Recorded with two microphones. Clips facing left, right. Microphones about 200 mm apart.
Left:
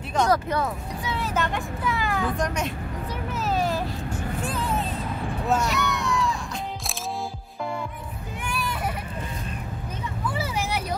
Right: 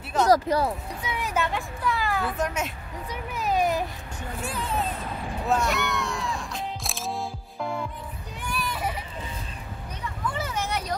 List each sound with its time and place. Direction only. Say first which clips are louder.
0.3 s speech: right 3 dB; 35° right (ahead or behind)
1.0 s speech: left 1 dB; 15° right (ahead or behind)
3.3 s a sound: right 1 dB; 15° right (ahead or behind)
5.5 s music: even; centre (ahead or behind)
10.3 s vehicle: left 2 dB; 10° left (ahead or behind)